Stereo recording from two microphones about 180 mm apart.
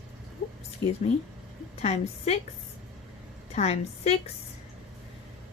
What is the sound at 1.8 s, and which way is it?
Speech, 35° left (ahead or behind).